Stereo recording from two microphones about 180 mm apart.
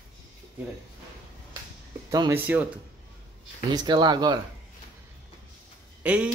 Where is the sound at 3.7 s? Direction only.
25° right (ahead or behind).